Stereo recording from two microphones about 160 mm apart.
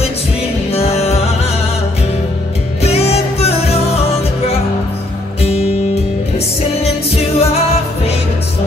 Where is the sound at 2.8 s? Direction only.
40° left (ahead or behind).